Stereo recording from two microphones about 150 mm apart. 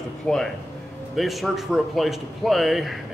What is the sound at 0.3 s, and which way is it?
Speech, 5° left (ahead or behind).